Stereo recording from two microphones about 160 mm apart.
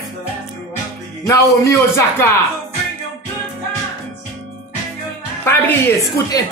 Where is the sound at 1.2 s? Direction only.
20° left (ahead or behind).